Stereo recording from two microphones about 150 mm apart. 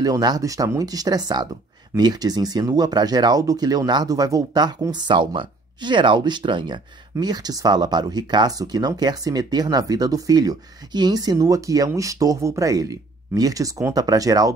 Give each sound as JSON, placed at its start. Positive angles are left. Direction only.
{"t": 0.0, "sound": "speech", "side_deg": -25}